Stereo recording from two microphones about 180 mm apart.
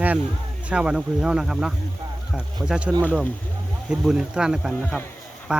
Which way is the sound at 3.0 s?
10° left (ahead or behind).